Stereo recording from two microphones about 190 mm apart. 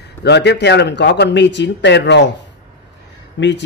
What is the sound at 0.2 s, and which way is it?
Speech, 65° left (ahead or behind).